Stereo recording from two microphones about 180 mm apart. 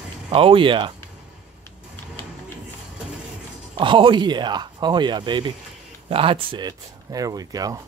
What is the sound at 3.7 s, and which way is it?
Speech, 25° right (ahead or behind).